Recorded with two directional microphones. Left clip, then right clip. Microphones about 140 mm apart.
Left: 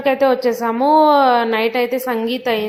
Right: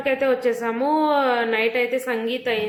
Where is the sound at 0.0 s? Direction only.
40° left (ahead or behind).